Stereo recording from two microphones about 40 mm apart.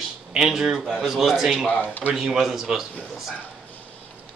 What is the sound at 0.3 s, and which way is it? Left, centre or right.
A man's voice, centre.